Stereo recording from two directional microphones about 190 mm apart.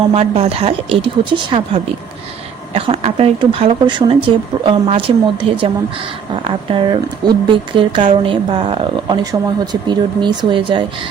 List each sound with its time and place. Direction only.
0.1 s speech: 30° right (ahead or behind)